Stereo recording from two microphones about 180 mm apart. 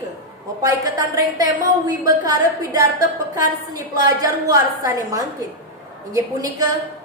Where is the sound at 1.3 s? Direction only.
20° right (ahead or behind).